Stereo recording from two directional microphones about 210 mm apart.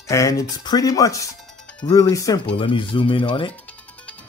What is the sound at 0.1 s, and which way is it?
Speech, 15° left (ahead or behind).